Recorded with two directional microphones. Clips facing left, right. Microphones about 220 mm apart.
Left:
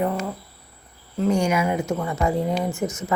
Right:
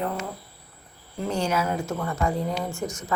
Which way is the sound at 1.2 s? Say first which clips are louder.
Left 5 dB; 10° left (ahead or behind).